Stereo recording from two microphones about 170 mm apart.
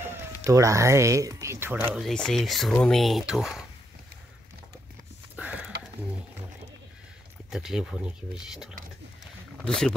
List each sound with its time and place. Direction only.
0.4 s speech: 20° right (ahead or behind)
2.0 s speech: centre (ahead or behind)
5.3 s a sound: 10° right (ahead or behind)
7.5 s speech: 5° right (ahead or behind)
9.7 s speech: 5° left (ahead or behind)